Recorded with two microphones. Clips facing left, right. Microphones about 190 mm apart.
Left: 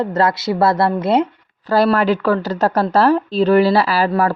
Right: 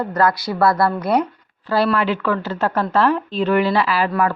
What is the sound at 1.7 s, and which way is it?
A woman's voice, 40° left (ahead or behind).